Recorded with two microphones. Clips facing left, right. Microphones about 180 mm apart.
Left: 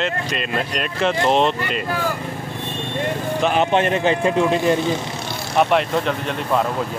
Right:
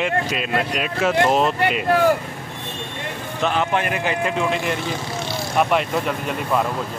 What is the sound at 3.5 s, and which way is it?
Speech, 20° left (ahead or behind).